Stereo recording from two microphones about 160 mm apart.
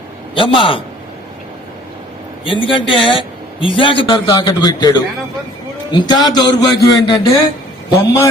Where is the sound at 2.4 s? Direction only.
30° left (ahead or behind).